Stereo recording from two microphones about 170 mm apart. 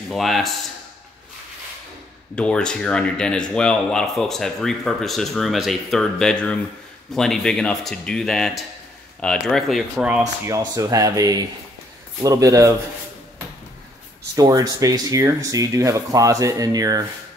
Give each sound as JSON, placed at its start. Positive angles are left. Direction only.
{"t": 0.1, "sound": "speech", "side_deg": 0}
{"t": 2.3, "sound": "speech", "side_deg": 5}
{"t": 10.4, "sound": "speech", "side_deg": -20}
{"t": 14.3, "sound": "speech", "side_deg": -20}